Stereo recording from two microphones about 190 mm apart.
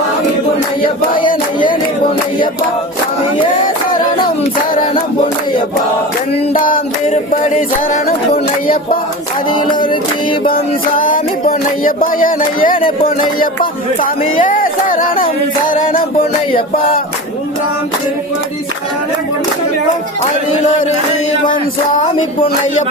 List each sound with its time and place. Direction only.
1.3 s music: 45° left (ahead or behind)
3.5 s music: 45° left (ahead or behind)
6.3 s music: 45° left (ahead or behind)
9.9 s music: 25° left (ahead or behind)
10.5 s music: 45° left (ahead or behind)
14.0 s speech: 45° left (ahead or behind)
15.2 s music: 45° left (ahead or behind)
22.0 s music: 40° left (ahead or behind)